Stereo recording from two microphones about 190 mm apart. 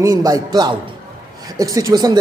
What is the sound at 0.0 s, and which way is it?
Speech, 20° right (ahead or behind).